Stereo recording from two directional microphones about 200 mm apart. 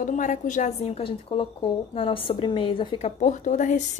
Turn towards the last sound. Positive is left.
turn(degrees=40)  # may be behind; listen again after turning